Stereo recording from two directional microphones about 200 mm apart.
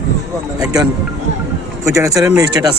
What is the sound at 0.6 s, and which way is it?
Speech, 20° right (ahead or behind).